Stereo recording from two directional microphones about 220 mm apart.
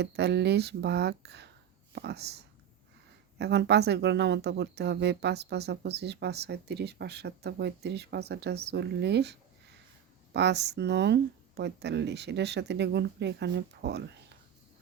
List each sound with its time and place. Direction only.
0.0 s speech: 50° right (ahead or behind)